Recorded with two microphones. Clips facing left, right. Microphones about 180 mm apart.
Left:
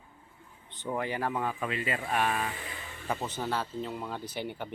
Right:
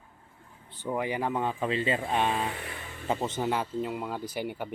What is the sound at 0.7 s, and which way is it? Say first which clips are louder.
A man's voice: right 2 dB; 10° right (ahead or behind).